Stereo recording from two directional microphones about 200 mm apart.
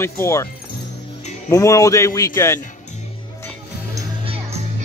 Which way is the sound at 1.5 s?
15° left (ahead or behind).